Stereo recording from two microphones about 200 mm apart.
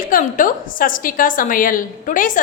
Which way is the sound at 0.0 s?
40° left (ahead or behind).